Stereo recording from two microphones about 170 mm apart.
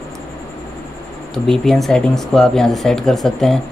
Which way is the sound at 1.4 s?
Centre (ahead or behind).